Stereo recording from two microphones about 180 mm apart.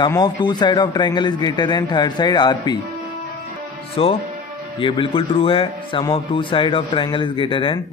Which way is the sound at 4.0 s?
30° left (ahead or behind).